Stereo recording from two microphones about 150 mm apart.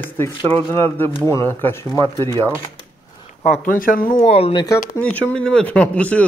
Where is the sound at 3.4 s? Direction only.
65° left (ahead or behind).